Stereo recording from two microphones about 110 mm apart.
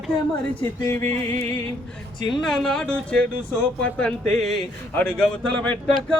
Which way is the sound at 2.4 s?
5° left (ahead or behind).